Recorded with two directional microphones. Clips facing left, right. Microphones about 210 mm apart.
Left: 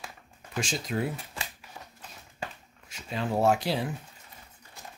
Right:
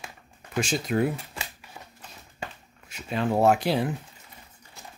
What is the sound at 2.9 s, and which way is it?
Speech, 60° right (ahead or behind).